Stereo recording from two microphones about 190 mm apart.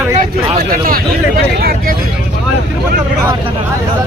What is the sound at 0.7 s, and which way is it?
Speech, 50° right (ahead or behind).